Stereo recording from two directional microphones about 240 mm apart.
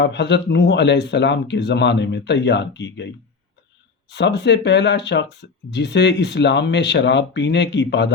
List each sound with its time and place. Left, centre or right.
0.0 s speech: left
4.1 s speech: left